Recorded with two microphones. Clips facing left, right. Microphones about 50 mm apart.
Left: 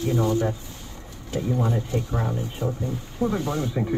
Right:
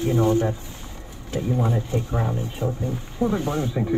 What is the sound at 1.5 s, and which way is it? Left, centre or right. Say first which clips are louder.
Speech: right 1 dB; centre.